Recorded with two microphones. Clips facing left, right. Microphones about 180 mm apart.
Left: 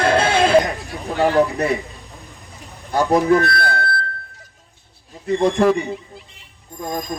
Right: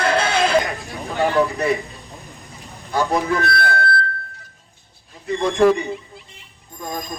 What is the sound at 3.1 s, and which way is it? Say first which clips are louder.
Speech: left 9 dB; 40° left (ahead or behind).